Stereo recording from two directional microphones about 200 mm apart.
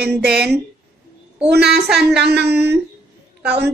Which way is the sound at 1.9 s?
55° right (ahead or behind).